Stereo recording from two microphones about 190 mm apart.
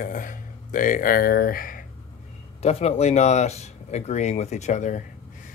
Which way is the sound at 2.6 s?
35° left (ahead or behind).